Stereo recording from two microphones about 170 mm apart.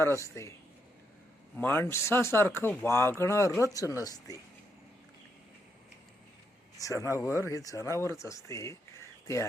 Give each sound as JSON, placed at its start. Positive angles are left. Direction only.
{"t": 0.0, "sound": "speech", "side_deg": 15}
{"t": 1.5, "sound": "speech", "side_deg": 10}
{"t": 6.7, "sound": "speech", "side_deg": 20}